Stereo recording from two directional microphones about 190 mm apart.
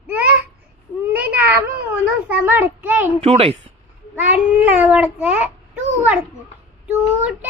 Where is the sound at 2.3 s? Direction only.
10° right (ahead or behind).